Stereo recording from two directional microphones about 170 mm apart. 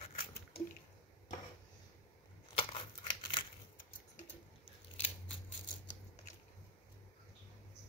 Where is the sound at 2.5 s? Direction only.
30° left (ahead or behind).